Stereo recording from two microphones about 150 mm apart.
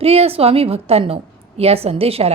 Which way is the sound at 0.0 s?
40° right (ahead or behind).